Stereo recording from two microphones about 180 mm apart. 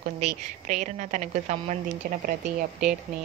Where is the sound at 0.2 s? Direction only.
40° right (ahead or behind).